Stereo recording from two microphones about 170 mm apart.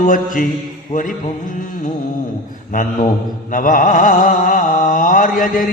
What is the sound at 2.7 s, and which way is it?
Mantra, 50° left (ahead or behind).